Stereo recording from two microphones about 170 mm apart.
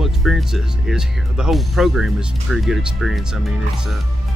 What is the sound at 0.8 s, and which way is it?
Speech, centre (ahead or behind).